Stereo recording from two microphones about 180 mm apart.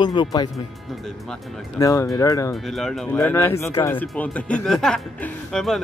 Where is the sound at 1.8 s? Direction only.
20° left (ahead or behind).